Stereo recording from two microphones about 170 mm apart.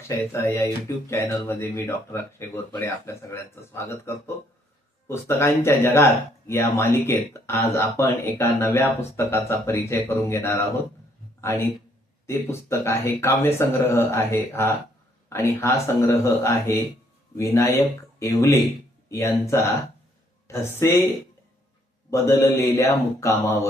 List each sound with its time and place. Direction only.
0.1 s speech: 15° left (ahead or behind)
12.2 s speech: 15° left (ahead or behind)
22.1 s speech: 15° left (ahead or behind)